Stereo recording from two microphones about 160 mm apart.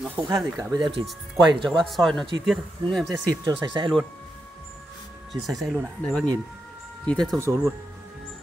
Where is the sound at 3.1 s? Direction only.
30° right (ahead or behind).